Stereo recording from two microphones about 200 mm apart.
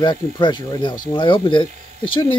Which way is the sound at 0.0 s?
20° left (ahead or behind).